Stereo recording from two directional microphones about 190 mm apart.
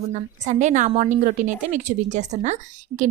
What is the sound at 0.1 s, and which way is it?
A woman's voice, 40° right (ahead or behind).